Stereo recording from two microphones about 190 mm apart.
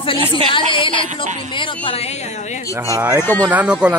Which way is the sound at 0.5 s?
25° left (ahead or behind).